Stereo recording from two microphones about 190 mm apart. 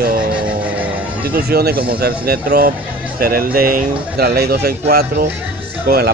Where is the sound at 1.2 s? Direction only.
55° right (ahead or behind).